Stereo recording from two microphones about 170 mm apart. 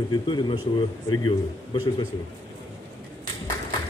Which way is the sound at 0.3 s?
30° left (ahead or behind).